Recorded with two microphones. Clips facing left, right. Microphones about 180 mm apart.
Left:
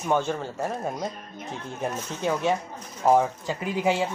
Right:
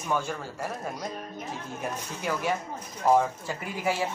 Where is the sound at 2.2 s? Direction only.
25° left (ahead or behind).